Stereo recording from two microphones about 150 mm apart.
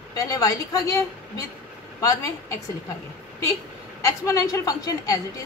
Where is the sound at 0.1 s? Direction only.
25° left (ahead or behind).